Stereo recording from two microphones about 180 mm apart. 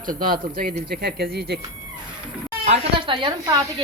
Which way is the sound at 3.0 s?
30° right (ahead or behind).